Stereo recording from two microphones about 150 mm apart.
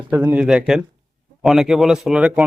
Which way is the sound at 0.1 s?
10° right (ahead or behind).